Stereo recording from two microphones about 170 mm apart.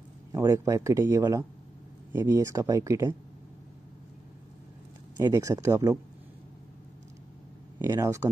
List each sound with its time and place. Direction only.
0.3 s speech: 15° right (ahead or behind)
5.2 s speech: 15° right (ahead or behind)
7.8 s speech: 15° right (ahead or behind)